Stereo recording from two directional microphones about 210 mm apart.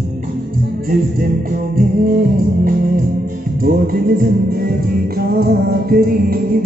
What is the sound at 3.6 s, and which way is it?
Music, 45° right (ahead or behind).